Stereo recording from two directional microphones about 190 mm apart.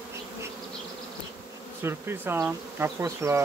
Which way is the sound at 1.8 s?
10° right (ahead or behind).